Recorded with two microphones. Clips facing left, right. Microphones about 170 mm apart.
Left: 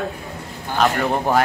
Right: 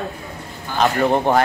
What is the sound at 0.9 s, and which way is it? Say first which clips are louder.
Speech: right 4 dB; centre (ahead or behind).